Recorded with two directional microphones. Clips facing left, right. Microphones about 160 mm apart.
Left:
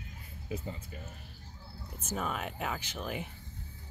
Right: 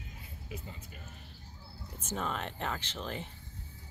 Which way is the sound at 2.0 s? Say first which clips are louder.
Left 1 dB; 5° left (ahead or behind).